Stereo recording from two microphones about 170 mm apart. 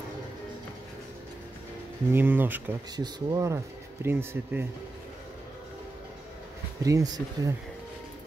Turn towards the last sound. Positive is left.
turn(degrees=-20)  # may be behind; listen again after turning